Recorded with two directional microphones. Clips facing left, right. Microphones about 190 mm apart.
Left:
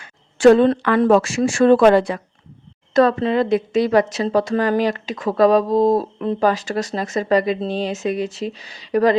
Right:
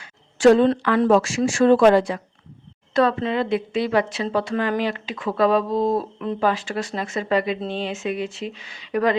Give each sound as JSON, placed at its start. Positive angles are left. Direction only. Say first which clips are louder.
{"t": 0.0, "sound": "speech", "louder": "left 3 dB", "side_deg": 60}
{"t": 2.9, "sound": "speech", "louder": "left 4 dB", "side_deg": 45}